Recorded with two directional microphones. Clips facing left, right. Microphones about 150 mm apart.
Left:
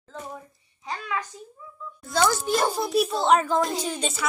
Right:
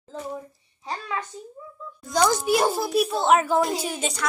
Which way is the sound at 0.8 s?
30° right (ahead or behind).